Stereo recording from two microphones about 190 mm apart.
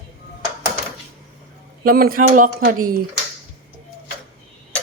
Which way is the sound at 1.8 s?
50° right (ahead or behind).